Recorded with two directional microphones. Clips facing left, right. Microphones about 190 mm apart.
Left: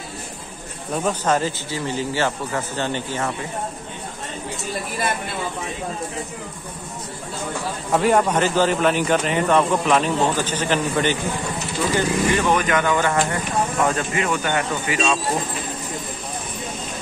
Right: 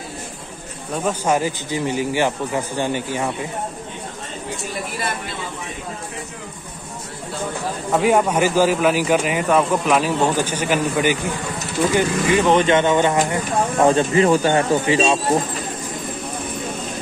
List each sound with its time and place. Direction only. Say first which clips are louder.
1.0 s speech: right 2 dB; 10° right (ahead or behind)
7.9 s speech: right 1 dB; 5° right (ahead or behind)
12.5 s speech: right 5 dB; 25° right (ahead or behind)
13.7 s speech: right 10 dB; 30° right (ahead or behind)